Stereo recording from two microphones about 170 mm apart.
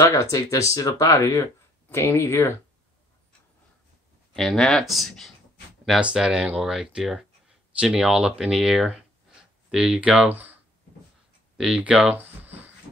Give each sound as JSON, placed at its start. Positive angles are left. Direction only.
{"t": 0.0, "sound": "speech", "side_deg": 20}
{"t": 4.4, "sound": "speech", "side_deg": 0}
{"t": 11.5, "sound": "a sound", "side_deg": -5}